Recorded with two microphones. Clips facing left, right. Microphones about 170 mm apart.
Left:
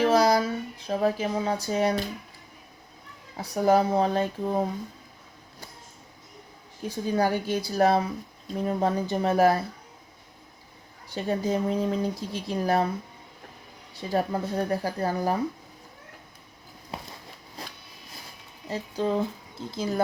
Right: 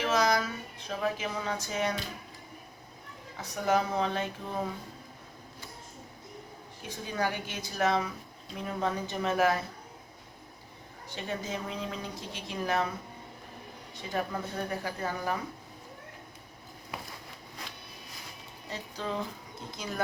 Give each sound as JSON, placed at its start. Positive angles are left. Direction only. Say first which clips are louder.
{"t": 0.0, "sound": "speech", "louder": "left 7 dB", "side_deg": 35}
{"t": 3.3, "sound": "speech", "louder": "left 7 dB", "side_deg": 35}
{"t": 6.8, "sound": "speech", "louder": "left 8 dB", "side_deg": 35}
{"t": 11.1, "sound": "speech", "louder": "left 9 dB", "side_deg": 35}
{"t": 14.1, "sound": "speech", "louder": "left 7 dB", "side_deg": 35}
{"t": 16.9, "sound": "a sound", "louder": "left 3 dB", "side_deg": 25}
{"t": 18.7, "sound": "speech", "louder": "left 9 dB", "side_deg": 35}